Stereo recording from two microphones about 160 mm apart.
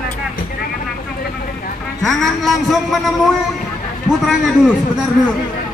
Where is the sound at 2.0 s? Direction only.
Centre (ahead or behind).